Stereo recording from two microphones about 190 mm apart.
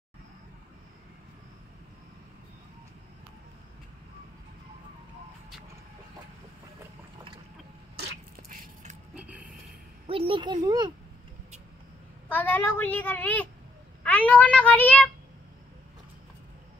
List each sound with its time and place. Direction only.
7.9 s vehicle: 60° right (ahead or behind)
9.1 s a sound: 5° right (ahead or behind)
10.0 s speech: 30° right (ahead or behind)
12.3 s a child's voice: 10° left (ahead or behind)